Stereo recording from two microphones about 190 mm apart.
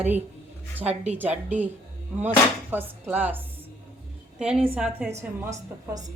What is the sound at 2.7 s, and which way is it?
A woman's voice, 10° right (ahead or behind).